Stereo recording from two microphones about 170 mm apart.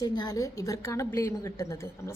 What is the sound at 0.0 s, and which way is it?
A woman's voice, 25° left (ahead or behind).